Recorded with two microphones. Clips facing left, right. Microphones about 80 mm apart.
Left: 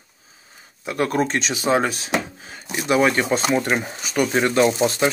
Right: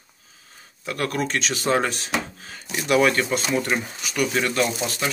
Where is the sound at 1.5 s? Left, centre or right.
Centre.